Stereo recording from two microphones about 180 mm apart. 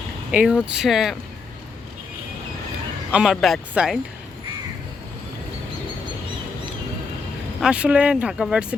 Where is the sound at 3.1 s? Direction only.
Centre (ahead or behind).